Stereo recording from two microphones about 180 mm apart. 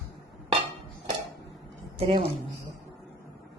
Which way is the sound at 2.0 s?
35° right (ahead or behind).